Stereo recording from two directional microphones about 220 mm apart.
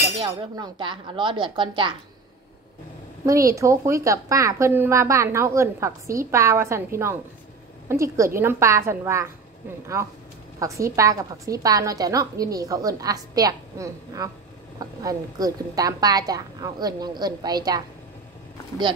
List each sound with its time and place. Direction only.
0.2 s a woman's voice: 20° right (ahead or behind)
3.3 s a woman's voice: 15° right (ahead or behind)